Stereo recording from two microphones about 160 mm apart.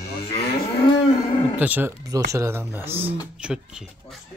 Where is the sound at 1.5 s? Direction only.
10° right (ahead or behind).